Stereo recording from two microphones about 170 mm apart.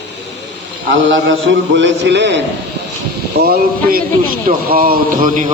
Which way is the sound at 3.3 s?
65° right (ahead or behind).